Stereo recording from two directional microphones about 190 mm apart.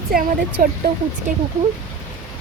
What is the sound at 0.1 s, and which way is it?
Speech, 50° right (ahead or behind).